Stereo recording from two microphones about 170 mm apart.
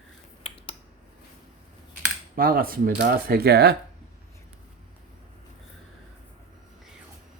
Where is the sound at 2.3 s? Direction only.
60° right (ahead or behind).